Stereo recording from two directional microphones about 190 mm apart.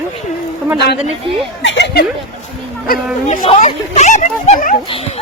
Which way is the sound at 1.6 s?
70° left (ahead or behind).